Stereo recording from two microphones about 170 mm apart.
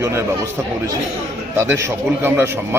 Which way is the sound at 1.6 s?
15° right (ahead or behind).